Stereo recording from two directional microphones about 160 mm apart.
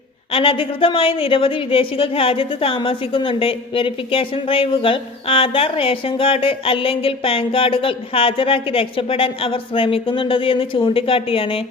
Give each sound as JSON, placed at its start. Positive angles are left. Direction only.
{"t": 0.3, "sound": "a woman's voice", "side_deg": 35}